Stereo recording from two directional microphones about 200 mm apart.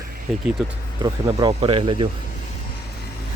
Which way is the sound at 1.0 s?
20° right (ahead or behind).